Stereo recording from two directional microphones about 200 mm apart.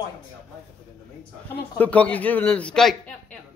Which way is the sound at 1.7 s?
5° left (ahead or behind).